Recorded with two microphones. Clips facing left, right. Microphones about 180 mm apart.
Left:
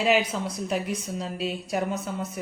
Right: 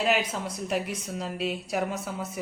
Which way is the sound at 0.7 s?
Centre (ahead or behind).